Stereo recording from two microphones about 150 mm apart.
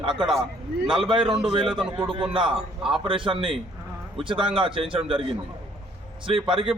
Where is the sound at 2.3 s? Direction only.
35° right (ahead or behind).